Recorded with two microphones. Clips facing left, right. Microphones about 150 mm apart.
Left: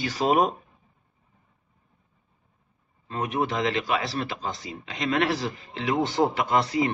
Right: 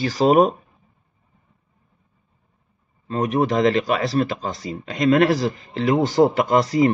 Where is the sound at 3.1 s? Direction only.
40° right (ahead or behind).